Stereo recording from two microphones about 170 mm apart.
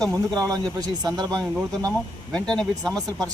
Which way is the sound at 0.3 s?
20° right (ahead or behind).